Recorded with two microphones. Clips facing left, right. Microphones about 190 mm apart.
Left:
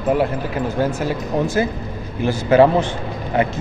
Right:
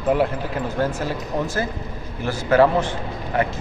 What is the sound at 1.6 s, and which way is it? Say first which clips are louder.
Speech: left 6 dB; 15° left (ahead or behind).